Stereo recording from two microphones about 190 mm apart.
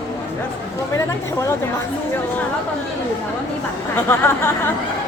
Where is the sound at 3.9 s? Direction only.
10° left (ahead or behind).